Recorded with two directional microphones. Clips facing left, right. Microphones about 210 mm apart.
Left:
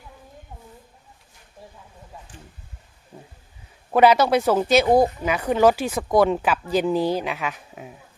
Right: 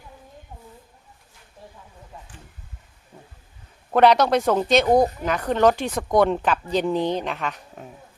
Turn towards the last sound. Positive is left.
turn(degrees=5)  # may be behind; listen again after turning